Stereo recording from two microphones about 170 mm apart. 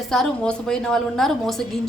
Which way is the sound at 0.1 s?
5° left (ahead or behind).